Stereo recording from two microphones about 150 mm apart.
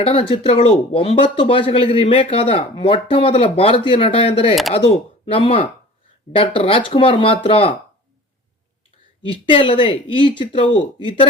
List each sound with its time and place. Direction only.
0.0 s speech: 40° left (ahead or behind)
9.2 s speech: 35° left (ahead or behind)